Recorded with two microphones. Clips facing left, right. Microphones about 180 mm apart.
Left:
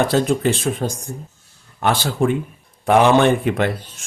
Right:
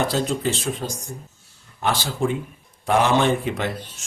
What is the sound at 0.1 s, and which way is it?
Speech, 55° left (ahead or behind).